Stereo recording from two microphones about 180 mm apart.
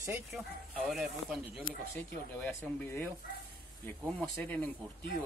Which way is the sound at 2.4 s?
10° left (ahead or behind).